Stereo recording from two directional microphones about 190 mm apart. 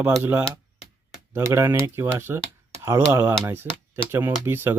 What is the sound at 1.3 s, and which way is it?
Speech, 15° right (ahead or behind).